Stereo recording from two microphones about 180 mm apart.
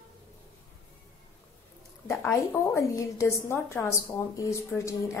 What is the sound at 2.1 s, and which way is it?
A woman's voice, 15° left (ahead or behind).